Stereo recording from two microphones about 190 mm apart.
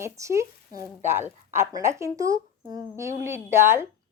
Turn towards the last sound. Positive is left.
turn(degrees=-15)  # may be behind; listen again after turning